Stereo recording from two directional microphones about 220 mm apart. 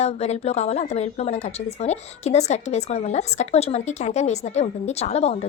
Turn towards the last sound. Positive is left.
turn(degrees=30)  # may be behind; listen again after turning